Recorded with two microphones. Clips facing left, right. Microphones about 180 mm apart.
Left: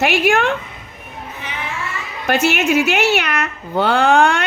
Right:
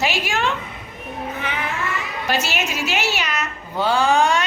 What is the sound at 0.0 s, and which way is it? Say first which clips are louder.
Speech: left 7 dB; 55° left (ahead or behind).